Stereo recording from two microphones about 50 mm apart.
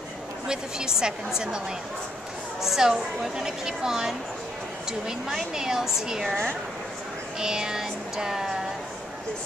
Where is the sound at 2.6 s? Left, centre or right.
Centre.